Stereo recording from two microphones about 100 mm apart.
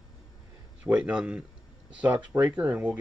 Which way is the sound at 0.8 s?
10° right (ahead or behind).